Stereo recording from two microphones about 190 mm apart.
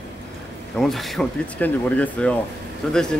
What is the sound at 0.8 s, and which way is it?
Speech, centre (ahead or behind).